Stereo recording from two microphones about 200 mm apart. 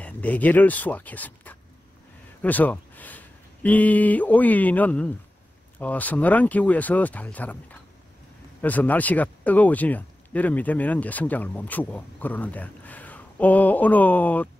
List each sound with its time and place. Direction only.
0.0 s speech: 10° left (ahead or behind)
8.5 s speech: 10° left (ahead or behind)